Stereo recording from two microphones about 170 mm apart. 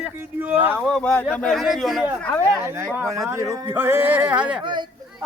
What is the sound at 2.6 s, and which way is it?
Speech, 15° right (ahead or behind).